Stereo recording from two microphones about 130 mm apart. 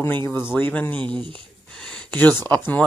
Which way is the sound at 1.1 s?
40° right (ahead or behind).